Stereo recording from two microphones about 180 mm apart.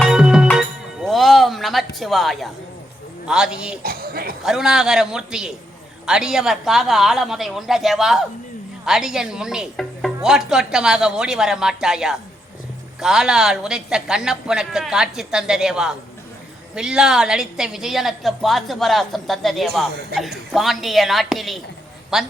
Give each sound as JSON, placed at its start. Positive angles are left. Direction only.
{"t": 0.0, "sound": "music", "side_deg": -5}
{"t": 3.2, "sound": "speech", "side_deg": -5}
{"t": 3.8, "sound": "speech", "side_deg": -55}
{"t": 4.4, "sound": "speech", "side_deg": 0}